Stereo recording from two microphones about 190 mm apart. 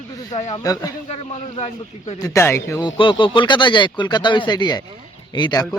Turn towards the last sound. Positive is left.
turn(degrees=25)  # may be behind; listen again after turning